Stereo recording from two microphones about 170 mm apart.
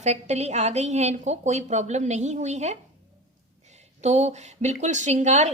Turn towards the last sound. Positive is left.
turn(degrees=-45)  # may be behind; listen again after turning